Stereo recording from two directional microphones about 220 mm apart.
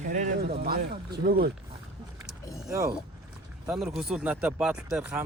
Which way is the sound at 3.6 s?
Centre (ahead or behind).